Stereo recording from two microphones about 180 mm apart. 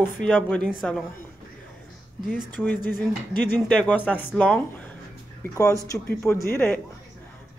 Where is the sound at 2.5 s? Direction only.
10° left (ahead or behind).